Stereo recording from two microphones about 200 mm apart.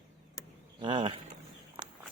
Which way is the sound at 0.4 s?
15° left (ahead or behind).